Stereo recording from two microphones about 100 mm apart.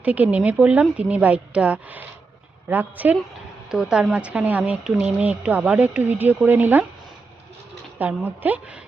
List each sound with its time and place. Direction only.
0.0 s a woman's voice: 15° right (ahead or behind)
7.9 s a woman's voice: 15° right (ahead or behind)